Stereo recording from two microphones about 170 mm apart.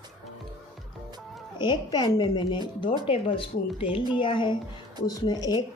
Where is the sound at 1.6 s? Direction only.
25° left (ahead or behind).